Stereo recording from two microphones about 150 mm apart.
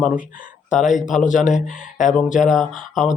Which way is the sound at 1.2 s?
60° left (ahead or behind).